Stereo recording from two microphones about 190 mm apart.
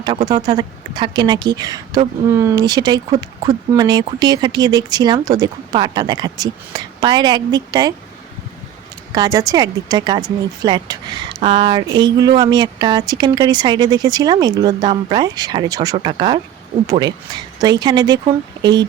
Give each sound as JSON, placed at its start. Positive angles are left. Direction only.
{"t": 0.4, "sound": "speech", "side_deg": -25}
{"t": 9.1, "sound": "speech", "side_deg": -20}